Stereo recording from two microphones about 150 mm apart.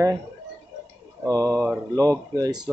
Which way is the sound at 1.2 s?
20° right (ahead or behind).